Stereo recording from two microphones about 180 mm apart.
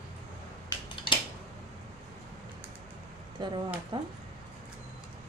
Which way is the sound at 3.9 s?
25° right (ahead or behind).